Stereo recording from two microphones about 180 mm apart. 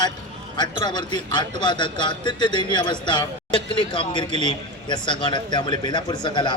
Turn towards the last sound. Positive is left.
turn(degrees=25)  # may be behind; listen again after turning